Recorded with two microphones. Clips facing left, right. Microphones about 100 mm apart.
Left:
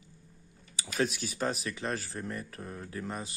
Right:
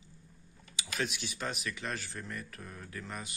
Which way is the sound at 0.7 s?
40° left (ahead or behind).